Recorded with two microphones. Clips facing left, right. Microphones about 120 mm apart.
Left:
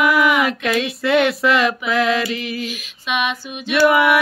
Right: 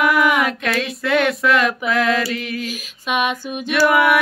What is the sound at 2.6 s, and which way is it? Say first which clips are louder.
Female singing: even; 45° right (ahead or behind).